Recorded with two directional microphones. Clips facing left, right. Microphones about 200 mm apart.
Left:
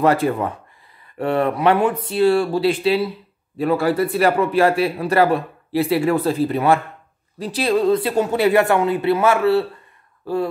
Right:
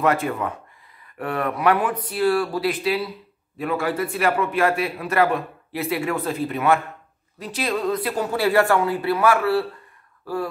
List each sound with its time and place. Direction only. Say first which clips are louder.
0.0 s a man's voice: left 4 dB; 35° left (ahead or behind)